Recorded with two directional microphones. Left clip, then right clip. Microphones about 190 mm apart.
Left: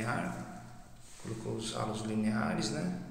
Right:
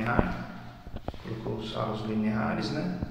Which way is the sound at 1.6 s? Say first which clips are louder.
Right 4 dB; 25° left (ahead or behind).